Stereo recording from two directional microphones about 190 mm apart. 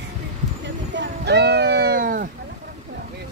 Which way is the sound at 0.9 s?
65° right (ahead or behind).